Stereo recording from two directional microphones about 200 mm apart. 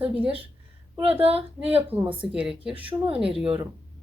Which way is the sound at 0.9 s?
30° right (ahead or behind).